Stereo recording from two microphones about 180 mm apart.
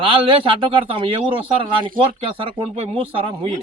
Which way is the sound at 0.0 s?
30° right (ahead or behind).